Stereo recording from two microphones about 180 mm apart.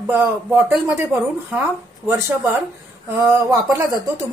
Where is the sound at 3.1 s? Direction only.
15° right (ahead or behind).